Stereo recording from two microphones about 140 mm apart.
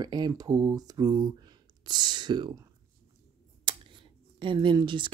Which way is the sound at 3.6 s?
35° right (ahead or behind).